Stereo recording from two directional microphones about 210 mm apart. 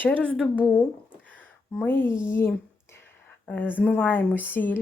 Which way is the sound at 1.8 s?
10° left (ahead or behind).